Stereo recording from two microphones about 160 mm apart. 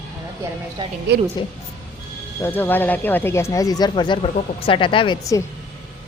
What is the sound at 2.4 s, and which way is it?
Speech, 15° left (ahead or behind).